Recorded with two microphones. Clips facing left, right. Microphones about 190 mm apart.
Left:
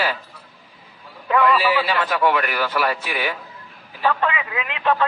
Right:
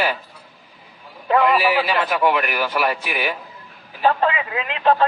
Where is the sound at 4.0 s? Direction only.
35° right (ahead or behind).